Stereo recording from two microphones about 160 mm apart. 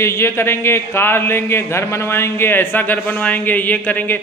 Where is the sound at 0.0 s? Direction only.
15° left (ahead or behind).